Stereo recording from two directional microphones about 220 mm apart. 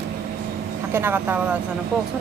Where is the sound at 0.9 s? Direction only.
10° right (ahead or behind).